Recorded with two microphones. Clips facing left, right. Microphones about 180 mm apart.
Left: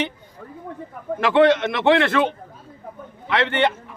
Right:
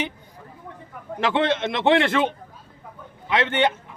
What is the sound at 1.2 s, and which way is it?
A man's voice, 20° right (ahead or behind).